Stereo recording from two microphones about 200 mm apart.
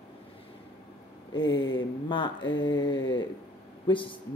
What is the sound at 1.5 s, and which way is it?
A man's voice, 25° left (ahead or behind).